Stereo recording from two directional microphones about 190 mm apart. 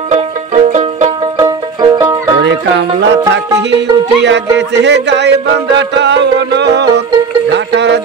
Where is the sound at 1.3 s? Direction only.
20° right (ahead or behind).